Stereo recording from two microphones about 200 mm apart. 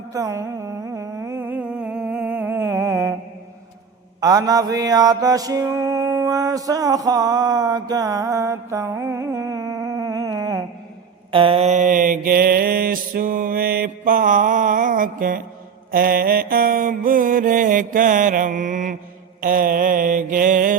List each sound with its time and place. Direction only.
0.1 s humming: 15° right (ahead or behind)
4.2 s mantra: 20° right (ahead or behind)
11.3 s mantra: 25° right (ahead or behind); by 20.7 s 40° right (ahead or behind)